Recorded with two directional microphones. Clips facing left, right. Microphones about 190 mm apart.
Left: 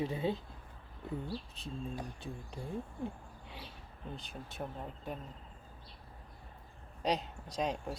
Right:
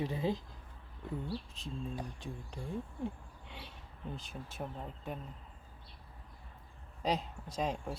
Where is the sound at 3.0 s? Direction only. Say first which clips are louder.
Right 1 dB; centre (ahead or behind).